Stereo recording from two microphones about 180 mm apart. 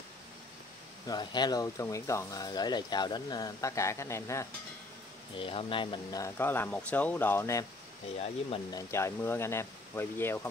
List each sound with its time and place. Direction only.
1.0 s speech: 25° left (ahead or behind)
5.4 s speech: 30° left (ahead or behind)
8.7 s speech: 15° left (ahead or behind)